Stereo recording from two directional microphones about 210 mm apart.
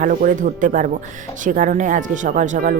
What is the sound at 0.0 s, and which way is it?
Speech, 40° right (ahead or behind).